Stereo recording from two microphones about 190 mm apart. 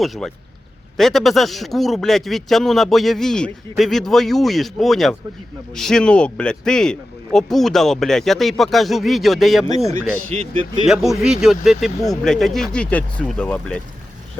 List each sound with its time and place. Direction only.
0.0 s speech: centre (ahead or behind)
10.3 s a man's voice: 30° right (ahead or behind)
10.8 s speech: centre (ahead or behind)